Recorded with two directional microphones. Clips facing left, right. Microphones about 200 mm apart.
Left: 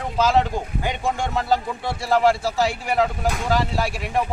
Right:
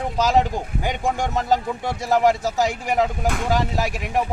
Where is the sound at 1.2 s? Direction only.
15° right (ahead or behind).